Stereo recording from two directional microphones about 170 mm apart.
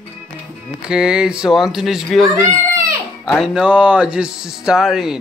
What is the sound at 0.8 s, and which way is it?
Speech, 5° right (ahead or behind).